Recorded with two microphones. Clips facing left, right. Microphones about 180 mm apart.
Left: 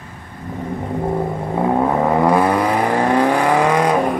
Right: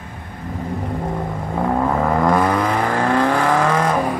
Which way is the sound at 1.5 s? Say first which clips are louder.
Left 2 dB; 20° left (ahead or behind).